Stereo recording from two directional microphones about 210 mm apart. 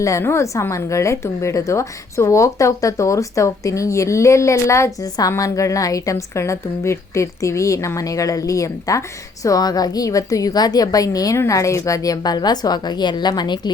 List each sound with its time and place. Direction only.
0.0 s a woman's voice: 15° left (ahead or behind)